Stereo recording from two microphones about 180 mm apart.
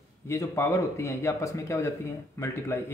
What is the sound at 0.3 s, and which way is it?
A man's voice, 15° left (ahead or behind).